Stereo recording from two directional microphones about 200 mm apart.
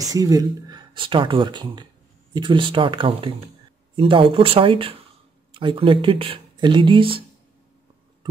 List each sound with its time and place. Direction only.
0.0 s speech: 15° right (ahead or behind)